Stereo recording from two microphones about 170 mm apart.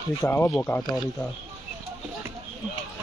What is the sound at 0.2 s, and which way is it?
Speech, 15° left (ahead or behind).